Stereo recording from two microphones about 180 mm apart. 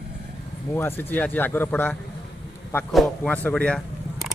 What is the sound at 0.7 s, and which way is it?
Speech, 10° left (ahead or behind).